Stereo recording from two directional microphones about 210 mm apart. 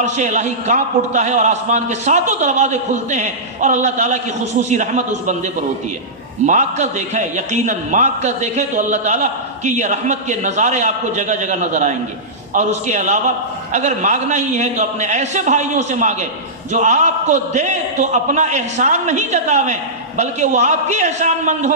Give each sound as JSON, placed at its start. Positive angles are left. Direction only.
{"t": 0.0, "sound": "a man's voice", "side_deg": -35}
{"t": 6.4, "sound": "a man's voice", "side_deg": -35}